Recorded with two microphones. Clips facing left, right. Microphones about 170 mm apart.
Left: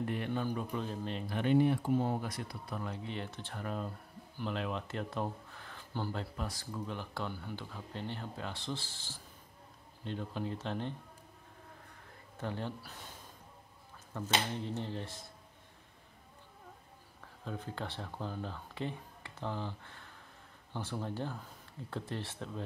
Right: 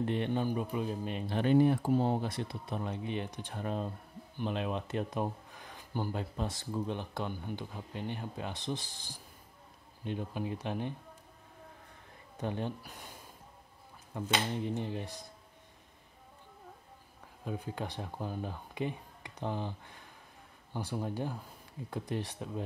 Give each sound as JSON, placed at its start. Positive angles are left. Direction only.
{"t": 0.0, "sound": "speech", "side_deg": -25}
{"t": 1.2, "sound": "speech", "side_deg": -35}
{"t": 2.0, "sound": "speech", "side_deg": -30}
{"t": 12.4, "sound": "speech", "side_deg": -15}
{"t": 14.1, "sound": "speech", "side_deg": -15}
{"t": 17.5, "sound": "speech", "side_deg": -15}